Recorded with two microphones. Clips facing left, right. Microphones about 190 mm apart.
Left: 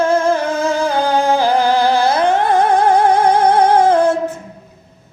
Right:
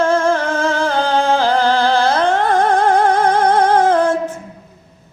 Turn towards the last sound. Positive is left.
turn(degrees=10)  # may be behind; listen again after turning